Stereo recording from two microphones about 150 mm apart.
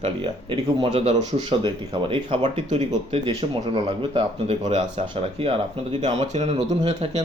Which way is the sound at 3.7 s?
35° right (ahead or behind).